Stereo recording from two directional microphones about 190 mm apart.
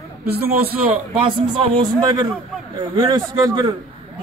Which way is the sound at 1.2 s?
25° right (ahead or behind).